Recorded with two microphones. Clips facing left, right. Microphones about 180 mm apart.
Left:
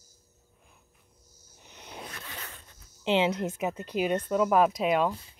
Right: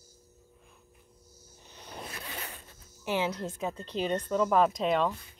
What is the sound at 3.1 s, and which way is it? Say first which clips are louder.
A woman's voice: left 5 dB; 20° left (ahead or behind).